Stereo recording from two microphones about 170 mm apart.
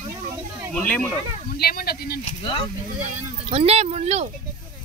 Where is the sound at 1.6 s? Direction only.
65° left (ahead or behind).